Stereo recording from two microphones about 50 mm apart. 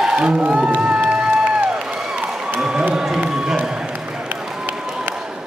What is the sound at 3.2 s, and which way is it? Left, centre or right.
Run, centre.